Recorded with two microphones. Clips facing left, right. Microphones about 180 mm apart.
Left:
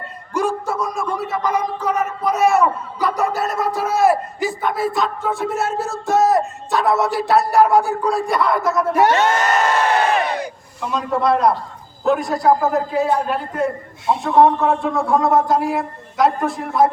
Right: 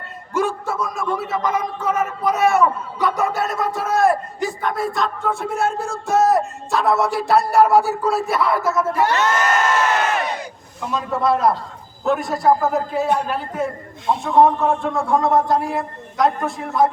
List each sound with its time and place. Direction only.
0.3 s a sound: centre (ahead or behind)
8.9 s speech: 70° left (ahead or behind)
10.8 s a man's voice: centre (ahead or behind)